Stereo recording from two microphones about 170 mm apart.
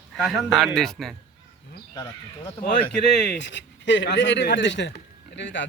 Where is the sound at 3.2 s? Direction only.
75° left (ahead or behind).